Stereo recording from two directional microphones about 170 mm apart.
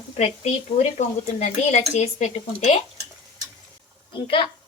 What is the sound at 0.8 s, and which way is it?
A woman's voice, 40° left (ahead or behind).